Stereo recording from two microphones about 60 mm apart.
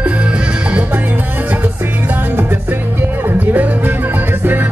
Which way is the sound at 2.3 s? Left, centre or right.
Right.